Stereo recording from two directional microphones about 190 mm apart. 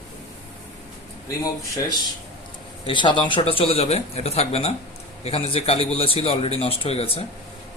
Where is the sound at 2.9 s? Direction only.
25° left (ahead or behind).